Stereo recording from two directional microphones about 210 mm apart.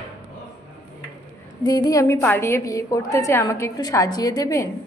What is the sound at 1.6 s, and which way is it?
A woman's voice, 20° left (ahead or behind).